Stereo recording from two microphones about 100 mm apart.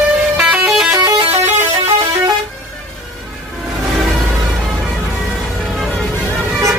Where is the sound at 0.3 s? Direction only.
10° right (ahead or behind).